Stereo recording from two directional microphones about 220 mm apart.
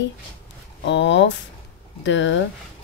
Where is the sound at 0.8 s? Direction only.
50° left (ahead or behind).